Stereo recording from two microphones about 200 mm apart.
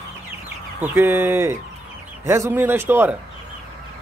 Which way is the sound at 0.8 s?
10° right (ahead or behind).